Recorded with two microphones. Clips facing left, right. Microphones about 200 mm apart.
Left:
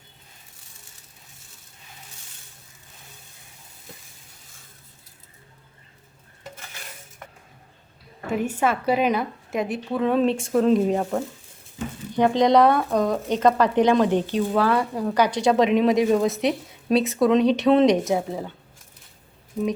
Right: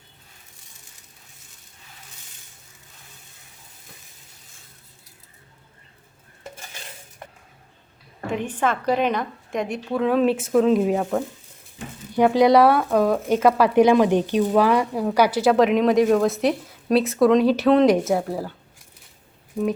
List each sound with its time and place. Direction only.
6.4 s stir: 25° right (ahead or behind)
8.3 s speech: 5° left (ahead or behind)